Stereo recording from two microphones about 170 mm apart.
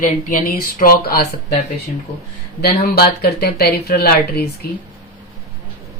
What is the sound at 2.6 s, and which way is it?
Speech, 65° left (ahead or behind).